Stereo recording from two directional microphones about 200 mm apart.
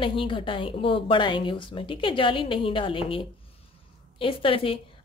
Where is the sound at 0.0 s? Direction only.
25° left (ahead or behind).